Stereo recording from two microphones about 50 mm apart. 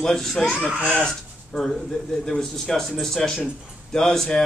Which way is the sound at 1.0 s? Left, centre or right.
Centre.